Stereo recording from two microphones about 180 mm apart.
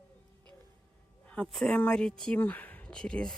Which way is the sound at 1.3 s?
5° left (ahead or behind).